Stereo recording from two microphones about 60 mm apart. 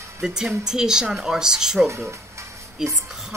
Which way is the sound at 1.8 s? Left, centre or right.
Right.